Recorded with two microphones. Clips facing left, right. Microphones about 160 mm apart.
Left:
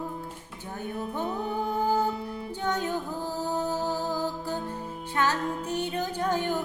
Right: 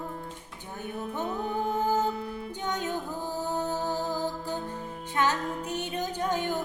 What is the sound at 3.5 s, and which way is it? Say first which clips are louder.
Music: left 2 dB; 15° left (ahead or behind).